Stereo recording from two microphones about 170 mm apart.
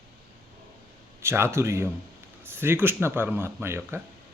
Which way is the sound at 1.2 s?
15° right (ahead or behind).